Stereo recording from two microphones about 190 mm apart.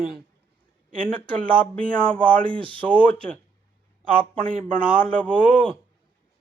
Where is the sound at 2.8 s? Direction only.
10° left (ahead or behind).